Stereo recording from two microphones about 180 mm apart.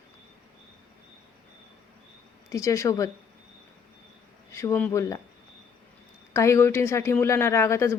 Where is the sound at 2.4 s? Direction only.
15° left (ahead or behind).